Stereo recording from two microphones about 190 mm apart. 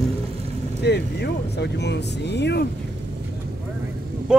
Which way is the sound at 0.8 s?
60° left (ahead or behind).